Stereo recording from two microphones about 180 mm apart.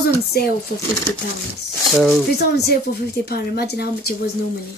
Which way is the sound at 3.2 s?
60° left (ahead or behind).